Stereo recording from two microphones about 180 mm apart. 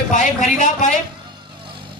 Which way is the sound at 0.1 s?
45° left (ahead or behind).